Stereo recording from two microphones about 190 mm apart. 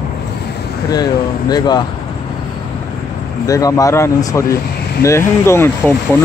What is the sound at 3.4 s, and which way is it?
Speech, 20° left (ahead or behind).